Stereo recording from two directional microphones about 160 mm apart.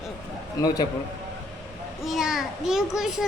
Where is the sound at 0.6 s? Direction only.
25° left (ahead or behind).